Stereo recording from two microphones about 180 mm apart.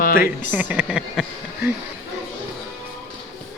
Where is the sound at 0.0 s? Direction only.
50° left (ahead or behind).